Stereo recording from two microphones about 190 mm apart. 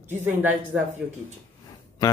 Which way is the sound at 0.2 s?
10° right (ahead or behind).